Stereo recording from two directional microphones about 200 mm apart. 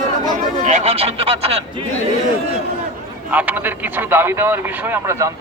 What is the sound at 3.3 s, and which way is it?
A man's voice, 10° right (ahead or behind).